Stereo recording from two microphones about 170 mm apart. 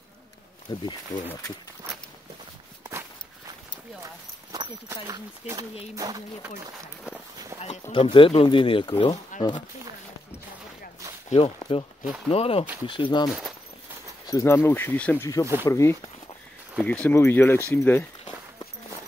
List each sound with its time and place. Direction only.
4.5 s speech: 20° right (ahead or behind)
7.9 s speech: 30° left (ahead or behind)
11.2 s speech: 40° left (ahead or behind)
14.2 s speech: 15° left (ahead or behind)